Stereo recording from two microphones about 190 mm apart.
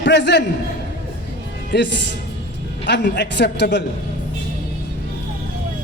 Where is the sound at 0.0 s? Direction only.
65° left (ahead or behind).